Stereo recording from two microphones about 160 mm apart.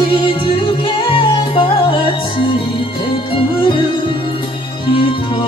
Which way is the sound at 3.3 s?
30° left (ahead or behind).